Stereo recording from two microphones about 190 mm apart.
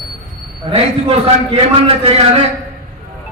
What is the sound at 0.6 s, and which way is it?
A man's voice, 30° right (ahead or behind).